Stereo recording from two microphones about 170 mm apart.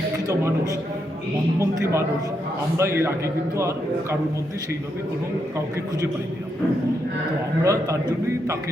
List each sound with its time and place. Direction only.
0.3 s a man's voice: 20° right (ahead or behind)
7.6 s a man's voice: 20° right (ahead or behind)